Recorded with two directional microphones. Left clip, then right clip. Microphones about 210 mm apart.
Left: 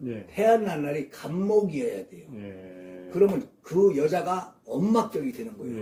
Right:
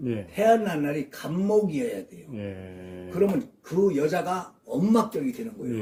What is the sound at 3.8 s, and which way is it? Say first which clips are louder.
A man's voice: left 1 dB; 10° right (ahead or behind).